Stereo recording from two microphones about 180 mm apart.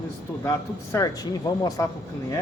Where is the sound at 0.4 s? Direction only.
15° left (ahead or behind).